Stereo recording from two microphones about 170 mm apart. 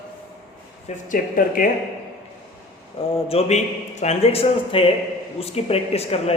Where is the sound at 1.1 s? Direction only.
55° left (ahead or behind).